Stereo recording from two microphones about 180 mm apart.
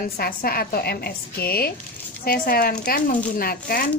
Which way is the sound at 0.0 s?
55° left (ahead or behind).